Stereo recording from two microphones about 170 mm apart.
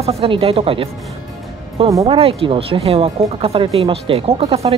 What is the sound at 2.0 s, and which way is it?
Speech, 35° right (ahead or behind).